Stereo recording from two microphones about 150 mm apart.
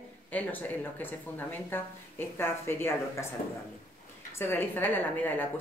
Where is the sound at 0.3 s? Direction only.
10° left (ahead or behind).